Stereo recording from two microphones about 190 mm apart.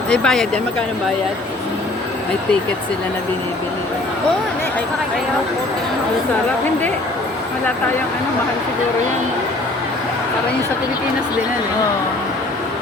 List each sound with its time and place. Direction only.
0.1 s speech: 5° left (ahead or behind)